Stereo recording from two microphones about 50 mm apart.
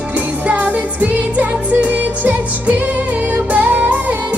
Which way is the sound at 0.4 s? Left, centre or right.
Right.